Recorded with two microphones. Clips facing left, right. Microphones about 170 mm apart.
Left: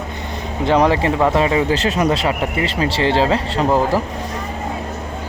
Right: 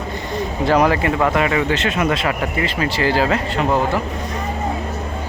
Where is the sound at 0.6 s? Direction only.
25° left (ahead or behind).